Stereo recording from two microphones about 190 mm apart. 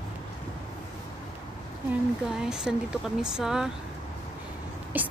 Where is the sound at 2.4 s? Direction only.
5° right (ahead or behind).